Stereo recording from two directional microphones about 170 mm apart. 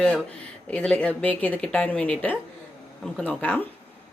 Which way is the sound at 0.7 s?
5° left (ahead or behind).